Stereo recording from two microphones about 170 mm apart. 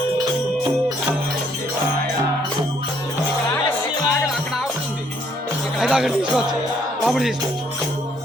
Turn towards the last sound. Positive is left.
turn(degrees=0)  # may be behind; listen again after turning